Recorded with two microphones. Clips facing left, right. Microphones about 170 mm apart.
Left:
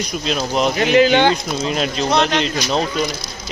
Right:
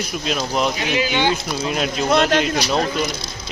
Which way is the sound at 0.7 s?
55° left (ahead or behind).